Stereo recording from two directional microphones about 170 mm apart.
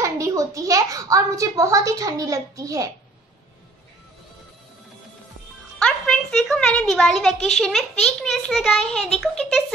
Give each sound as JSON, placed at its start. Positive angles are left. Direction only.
{"t": 0.0, "sound": "a child's voice", "side_deg": -20}
{"t": 5.8, "sound": "a child's voice", "side_deg": 5}